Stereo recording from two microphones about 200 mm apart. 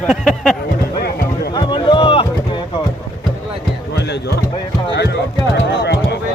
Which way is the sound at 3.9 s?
60° left (ahead or behind).